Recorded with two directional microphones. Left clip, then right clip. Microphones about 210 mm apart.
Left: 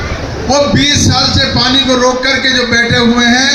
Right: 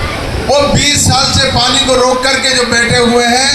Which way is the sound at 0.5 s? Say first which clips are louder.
Even; 35° right (ahead or behind).